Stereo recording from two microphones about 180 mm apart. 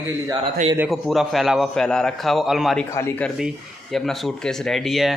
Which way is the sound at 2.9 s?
10° left (ahead or behind).